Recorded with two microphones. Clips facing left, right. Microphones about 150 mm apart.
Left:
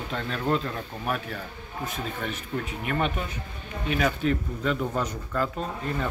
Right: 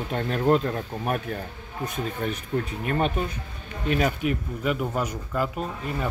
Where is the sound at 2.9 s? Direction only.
40° right (ahead or behind).